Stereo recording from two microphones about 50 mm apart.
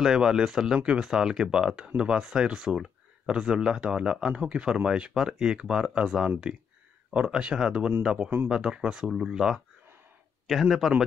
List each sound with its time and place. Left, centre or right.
0.0 s speech: centre
10.4 s a man's voice: centre